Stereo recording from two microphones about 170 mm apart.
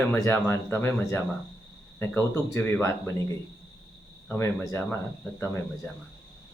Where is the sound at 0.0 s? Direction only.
10° left (ahead or behind).